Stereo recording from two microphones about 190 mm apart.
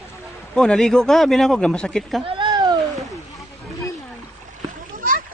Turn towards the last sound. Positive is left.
turn(degrees=-45)  # may be behind; listen again after turning